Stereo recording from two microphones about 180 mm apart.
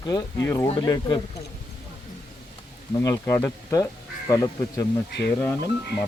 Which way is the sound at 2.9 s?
15° left (ahead or behind).